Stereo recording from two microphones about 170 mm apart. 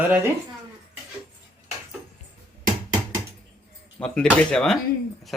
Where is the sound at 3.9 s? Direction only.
5° left (ahead or behind).